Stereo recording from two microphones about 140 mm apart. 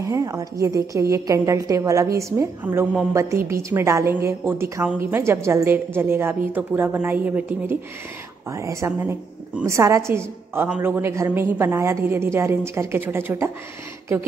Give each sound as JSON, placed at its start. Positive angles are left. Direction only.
{"t": 0.0, "sound": "a woman's voice", "side_deg": -25}